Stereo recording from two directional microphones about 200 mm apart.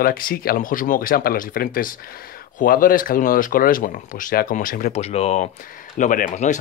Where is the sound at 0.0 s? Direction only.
45° left (ahead or behind).